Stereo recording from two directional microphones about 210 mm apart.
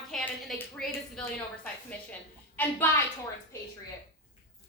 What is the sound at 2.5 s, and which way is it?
Speech, 10° left (ahead or behind).